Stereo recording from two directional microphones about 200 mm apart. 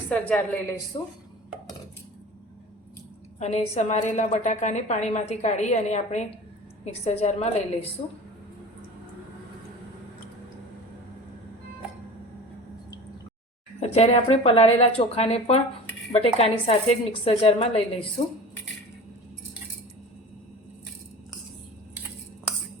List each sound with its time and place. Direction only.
0.1 s a woman's voice: 5° left (ahead or behind)
3.3 s a woman's voice: 35° left (ahead or behind)
13.7 s a woman's voice: 30° left (ahead or behind)